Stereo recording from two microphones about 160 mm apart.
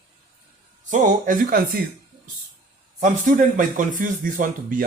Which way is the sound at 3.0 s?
50° right (ahead or behind).